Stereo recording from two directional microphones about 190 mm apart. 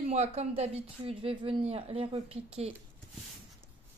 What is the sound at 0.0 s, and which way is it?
Speech, 35° right (ahead or behind).